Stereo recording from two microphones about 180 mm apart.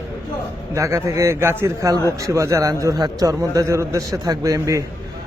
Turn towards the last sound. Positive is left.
turn(degrees=-20)  # may be behind; listen again after turning